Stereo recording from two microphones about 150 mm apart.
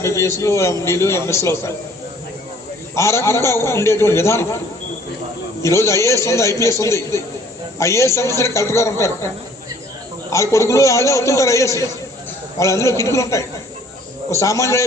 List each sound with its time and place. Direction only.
0.0 s a man's voice: 20° left (ahead or behind)
2.9 s a man's voice: 20° left (ahead or behind)
5.6 s a man's voice: 20° left (ahead or behind)
10.2 s a man's voice: 20° left (ahead or behind)